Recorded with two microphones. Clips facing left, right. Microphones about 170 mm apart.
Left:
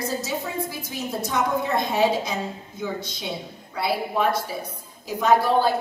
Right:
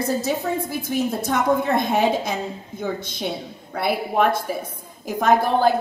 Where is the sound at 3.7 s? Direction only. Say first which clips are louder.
Right 3 dB; 55° right (ahead or behind).